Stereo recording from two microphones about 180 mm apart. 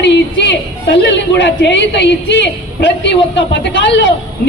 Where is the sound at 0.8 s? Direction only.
80° left.